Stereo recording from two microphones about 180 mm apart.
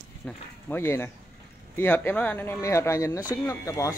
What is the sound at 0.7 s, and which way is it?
Speech, 15° left (ahead or behind).